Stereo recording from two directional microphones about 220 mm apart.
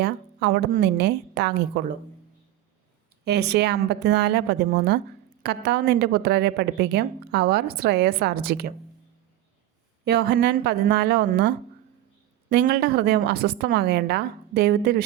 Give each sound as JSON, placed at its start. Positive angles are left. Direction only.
{"t": 0.0, "sound": "a woman's voice", "side_deg": -45}
{"t": 3.2, "sound": "a woman's voice", "side_deg": -50}
{"t": 10.0, "sound": "a woman's voice", "side_deg": -50}